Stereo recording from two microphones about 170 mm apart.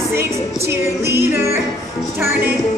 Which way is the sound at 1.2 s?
15° right (ahead or behind).